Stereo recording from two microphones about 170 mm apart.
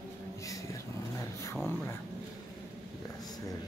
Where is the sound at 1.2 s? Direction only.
15° left (ahead or behind).